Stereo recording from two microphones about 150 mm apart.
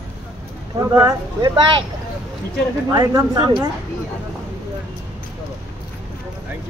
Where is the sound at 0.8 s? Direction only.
25° right (ahead or behind).